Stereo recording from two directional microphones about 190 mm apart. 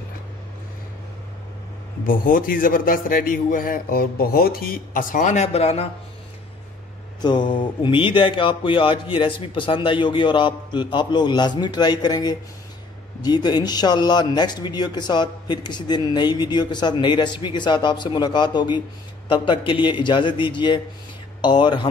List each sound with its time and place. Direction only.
2.0 s a man's voice: 45° left (ahead or behind)
7.2 s speech: 25° left (ahead or behind)